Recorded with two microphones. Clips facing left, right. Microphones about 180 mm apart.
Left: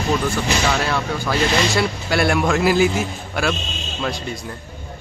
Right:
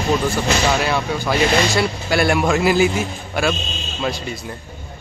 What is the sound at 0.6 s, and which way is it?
Speech, 15° right (ahead or behind).